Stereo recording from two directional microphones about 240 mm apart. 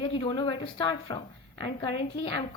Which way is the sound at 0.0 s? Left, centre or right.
Left.